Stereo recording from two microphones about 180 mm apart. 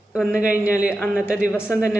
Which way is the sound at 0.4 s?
10° right (ahead or behind).